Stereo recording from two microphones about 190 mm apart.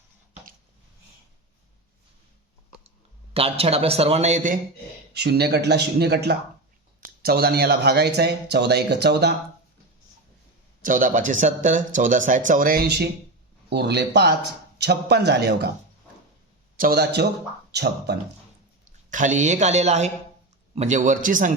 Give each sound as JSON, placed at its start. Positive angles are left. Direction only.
{"t": 3.3, "sound": "a man's voice", "side_deg": -30}
{"t": 5.1, "sound": "speech", "side_deg": -60}
{"t": 10.8, "sound": "speech", "side_deg": -45}
{"t": 16.7, "sound": "speech", "side_deg": -50}
{"t": 19.1, "sound": "a man's voice", "side_deg": -40}